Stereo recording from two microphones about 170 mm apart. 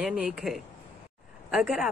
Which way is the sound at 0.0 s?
5° right (ahead or behind).